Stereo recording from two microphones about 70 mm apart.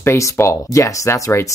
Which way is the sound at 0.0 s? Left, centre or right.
Left.